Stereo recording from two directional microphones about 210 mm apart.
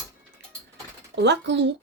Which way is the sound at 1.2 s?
55° right (ahead or behind).